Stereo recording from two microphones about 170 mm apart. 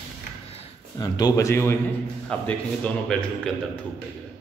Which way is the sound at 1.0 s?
25° left (ahead or behind).